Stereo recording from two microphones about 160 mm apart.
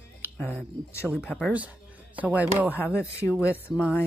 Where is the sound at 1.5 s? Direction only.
10° right (ahead or behind).